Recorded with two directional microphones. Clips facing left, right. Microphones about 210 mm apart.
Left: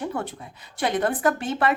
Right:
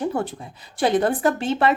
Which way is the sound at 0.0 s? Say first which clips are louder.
Right 5 dB; 30° right (ahead or behind).